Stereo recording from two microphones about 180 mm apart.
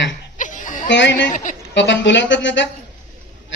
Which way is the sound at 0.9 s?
80° left.